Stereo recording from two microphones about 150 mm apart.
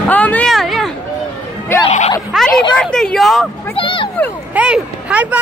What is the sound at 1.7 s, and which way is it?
Music, 15° left (ahead or behind).